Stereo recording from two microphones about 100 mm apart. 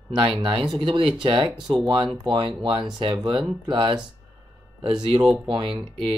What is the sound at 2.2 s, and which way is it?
Speech, 60° right (ahead or behind).